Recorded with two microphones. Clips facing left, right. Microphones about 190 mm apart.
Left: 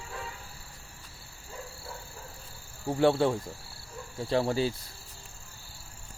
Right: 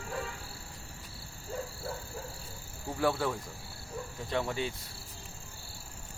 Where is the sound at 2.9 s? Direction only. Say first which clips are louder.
Left 6 dB; 25° left (ahead or behind).